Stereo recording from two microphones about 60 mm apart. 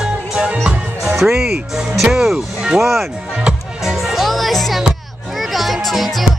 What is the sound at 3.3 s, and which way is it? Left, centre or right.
Music, centre.